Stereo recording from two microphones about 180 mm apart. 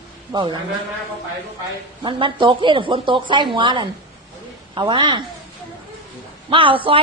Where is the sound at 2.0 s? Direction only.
25° right (ahead or behind).